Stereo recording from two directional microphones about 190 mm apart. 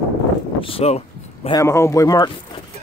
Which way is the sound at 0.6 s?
30° left (ahead or behind).